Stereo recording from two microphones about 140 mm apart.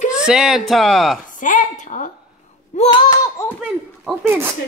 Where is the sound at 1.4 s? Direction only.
65° left (ahead or behind).